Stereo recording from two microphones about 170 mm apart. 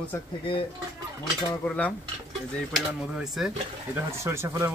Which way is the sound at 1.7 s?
10° left (ahead or behind).